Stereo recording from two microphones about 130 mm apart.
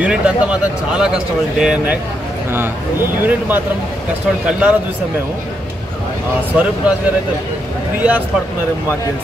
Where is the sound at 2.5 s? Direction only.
15° right (ahead or behind).